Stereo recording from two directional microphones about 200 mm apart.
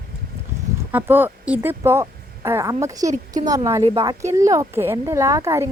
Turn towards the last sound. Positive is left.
turn(degrees=-15)  # may be behind; listen again after turning